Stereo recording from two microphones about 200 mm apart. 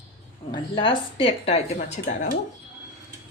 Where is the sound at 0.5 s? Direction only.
25° left (ahead or behind).